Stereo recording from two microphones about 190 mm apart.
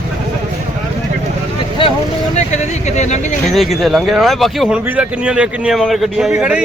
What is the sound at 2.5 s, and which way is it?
Speech, 35° left (ahead or behind).